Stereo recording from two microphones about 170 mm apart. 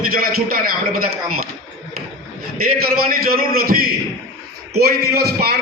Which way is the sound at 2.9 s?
60° right (ahead or behind).